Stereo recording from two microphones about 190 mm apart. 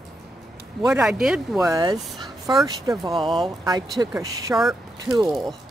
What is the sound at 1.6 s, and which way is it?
Speech, 20° right (ahead or behind).